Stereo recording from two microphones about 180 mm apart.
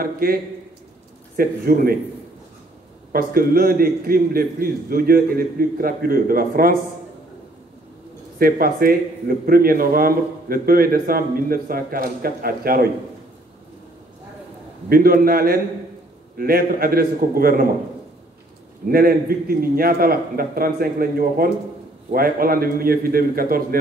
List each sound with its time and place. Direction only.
0.0 s a man's voice: 55° right (ahead or behind)
3.1 s a man's voice: 55° right (ahead or behind)
8.4 s a man's voice: 55° right (ahead or behind)
14.9 s a man's voice: 55° right (ahead or behind)
18.9 s a man's voice: 55° right (ahead or behind)